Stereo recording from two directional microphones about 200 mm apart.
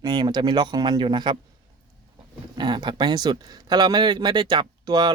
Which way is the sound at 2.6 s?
20° right (ahead or behind).